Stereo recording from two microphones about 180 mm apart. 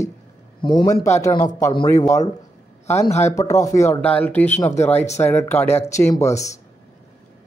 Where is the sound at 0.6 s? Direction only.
20° left (ahead or behind).